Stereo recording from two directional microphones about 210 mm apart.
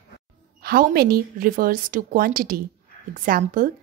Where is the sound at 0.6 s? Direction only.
45° right (ahead or behind).